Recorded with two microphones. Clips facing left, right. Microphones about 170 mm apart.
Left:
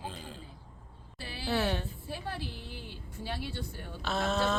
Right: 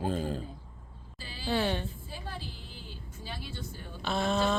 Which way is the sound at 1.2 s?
65° left (ahead or behind).